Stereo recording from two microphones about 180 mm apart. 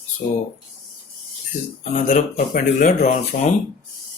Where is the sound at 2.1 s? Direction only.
40° left (ahead or behind).